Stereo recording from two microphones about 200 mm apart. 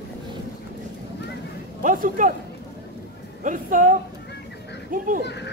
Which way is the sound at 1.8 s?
40° right (ahead or behind).